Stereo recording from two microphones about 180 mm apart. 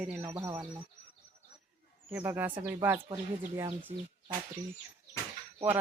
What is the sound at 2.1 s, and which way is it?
Speech, 10° right (ahead or behind).